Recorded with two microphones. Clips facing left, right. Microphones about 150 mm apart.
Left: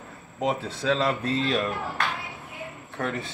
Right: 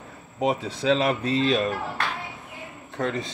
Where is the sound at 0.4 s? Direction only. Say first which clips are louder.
Right 2 dB; 15° right (ahead or behind).